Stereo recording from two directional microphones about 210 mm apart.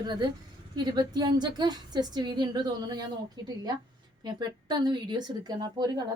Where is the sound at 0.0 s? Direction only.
20° right (ahead or behind).